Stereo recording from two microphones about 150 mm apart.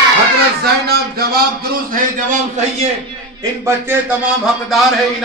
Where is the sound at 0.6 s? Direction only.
90° right.